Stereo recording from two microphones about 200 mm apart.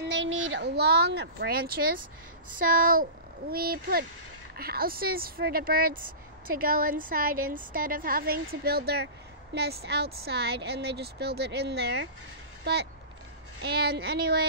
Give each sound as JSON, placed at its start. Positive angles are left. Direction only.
{"t": 0.0, "sound": "a woman's voice", "side_deg": -65}
{"t": 13.6, "sound": "speech", "side_deg": -55}